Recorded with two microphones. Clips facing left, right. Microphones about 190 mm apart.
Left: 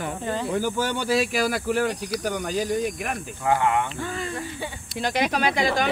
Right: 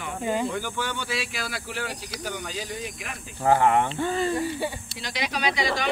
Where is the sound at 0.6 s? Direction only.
40° left (ahead or behind).